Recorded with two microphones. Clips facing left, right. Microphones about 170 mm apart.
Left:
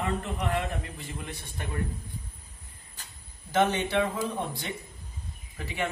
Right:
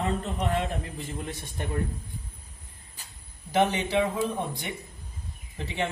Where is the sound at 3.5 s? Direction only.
15° right (ahead or behind).